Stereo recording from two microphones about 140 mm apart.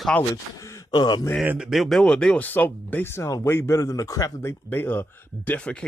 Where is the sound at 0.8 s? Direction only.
30° left (ahead or behind).